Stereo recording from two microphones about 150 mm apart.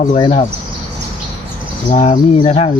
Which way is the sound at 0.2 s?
35° left (ahead or behind).